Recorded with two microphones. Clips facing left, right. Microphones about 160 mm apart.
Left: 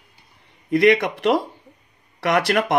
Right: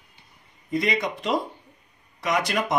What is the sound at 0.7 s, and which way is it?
A man's voice, 70° left (ahead or behind).